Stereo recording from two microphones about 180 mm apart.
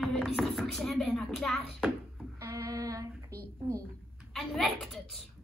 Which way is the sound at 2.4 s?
20° right (ahead or behind).